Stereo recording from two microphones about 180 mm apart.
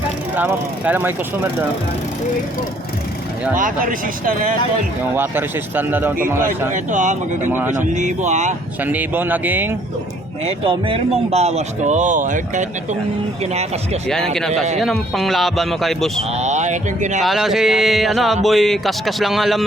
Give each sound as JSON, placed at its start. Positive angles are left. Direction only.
{"t": 0.3, "sound": "speech", "side_deg": -10}
{"t": 3.6, "sound": "speech", "side_deg": -50}
{"t": 5.1, "sound": "speech", "side_deg": -10}
{"t": 6.7, "sound": "speech", "side_deg": -45}
{"t": 8.8, "sound": "speech", "side_deg": -10}
{"t": 10.4, "sound": "speech", "side_deg": -30}
{"t": 14.3, "sound": "speech", "side_deg": 5}
{"t": 16.4, "sound": "a sound", "side_deg": -40}
{"t": 17.2, "sound": "speech", "side_deg": 0}